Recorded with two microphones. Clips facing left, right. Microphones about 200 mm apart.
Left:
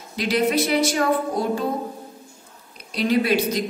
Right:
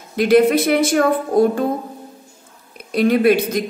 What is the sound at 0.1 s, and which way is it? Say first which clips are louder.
Speech: right 8 dB; 55° right (ahead or behind).